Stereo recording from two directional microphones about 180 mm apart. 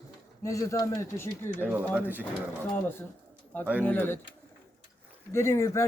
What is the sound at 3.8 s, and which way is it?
Speech, 10° left (ahead or behind).